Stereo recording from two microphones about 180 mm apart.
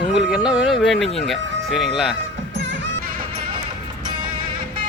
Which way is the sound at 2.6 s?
90° right.